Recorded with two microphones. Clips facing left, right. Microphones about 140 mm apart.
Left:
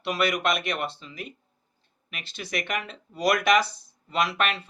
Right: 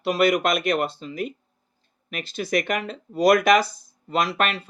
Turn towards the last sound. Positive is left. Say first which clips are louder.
# right 3 dB
turn(degrees=-40)  # may be behind; listen again after turning